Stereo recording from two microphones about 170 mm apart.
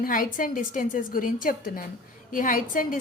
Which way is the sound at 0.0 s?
55° left (ahead or behind).